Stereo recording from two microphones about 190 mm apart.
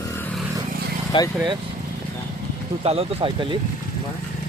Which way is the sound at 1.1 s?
25° left (ahead or behind).